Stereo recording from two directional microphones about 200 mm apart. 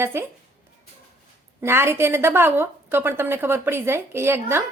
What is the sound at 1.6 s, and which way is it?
A woman's voice, 10° right (ahead or behind).